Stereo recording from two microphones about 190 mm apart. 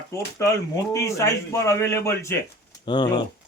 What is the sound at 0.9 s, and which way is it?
Speech, 15° left (ahead or behind).